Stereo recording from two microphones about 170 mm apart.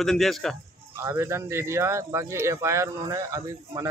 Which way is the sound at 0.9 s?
15° right (ahead or behind).